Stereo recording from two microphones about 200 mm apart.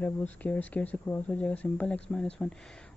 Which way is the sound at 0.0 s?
10° left (ahead or behind).